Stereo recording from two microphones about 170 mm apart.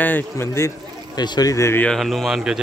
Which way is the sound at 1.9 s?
Centre (ahead or behind).